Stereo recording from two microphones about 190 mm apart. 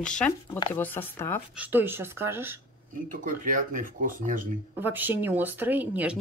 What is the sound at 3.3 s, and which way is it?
Speech, 45° right (ahead or behind).